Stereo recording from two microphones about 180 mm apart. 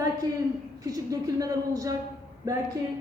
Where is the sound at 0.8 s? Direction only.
20° right (ahead or behind).